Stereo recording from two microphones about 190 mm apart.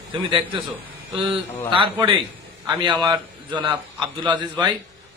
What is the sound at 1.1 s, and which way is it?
A man's voice, 25° right (ahead or behind).